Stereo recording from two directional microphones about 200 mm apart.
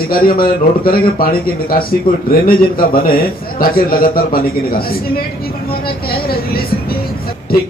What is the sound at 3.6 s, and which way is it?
A man's voice, 45° left (ahead or behind).